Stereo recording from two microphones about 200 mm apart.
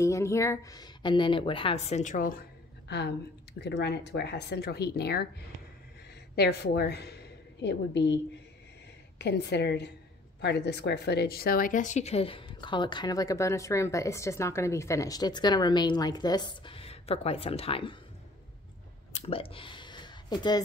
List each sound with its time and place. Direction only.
0.0 s speech: 15° left (ahead or behind); by 2.4 s 45° left (ahead or behind)
2.9 s speech: 55° left (ahead or behind)
6.3 s a woman's voice: 55° left (ahead or behind)
9.2 s speech: 55° left (ahead or behind); by 17.9 s 30° left (ahead or behind)
19.1 s a sound: 30° left (ahead or behind)